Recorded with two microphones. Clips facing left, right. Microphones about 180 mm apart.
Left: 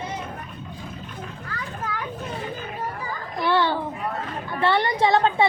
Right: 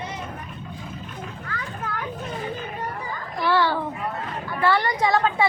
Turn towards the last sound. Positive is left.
turn(degrees=25)  # may be behind; listen again after turning